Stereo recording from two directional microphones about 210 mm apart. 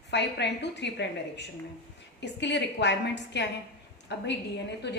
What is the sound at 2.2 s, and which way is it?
A woman's voice, 55° left (ahead or behind).